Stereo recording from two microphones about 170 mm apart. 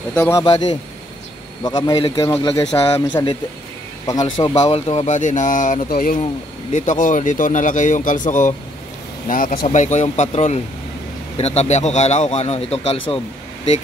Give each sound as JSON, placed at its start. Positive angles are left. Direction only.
{"t": 0.1, "sound": "speech", "side_deg": 15}
{"t": 1.6, "sound": "a man's voice", "side_deg": 25}
{"t": 4.6, "sound": "speech", "side_deg": 40}
{"t": 5.9, "sound": "speech", "side_deg": 60}
{"t": 6.7, "sound": "speech", "side_deg": 50}
{"t": 9.7, "sound": "speech", "side_deg": 45}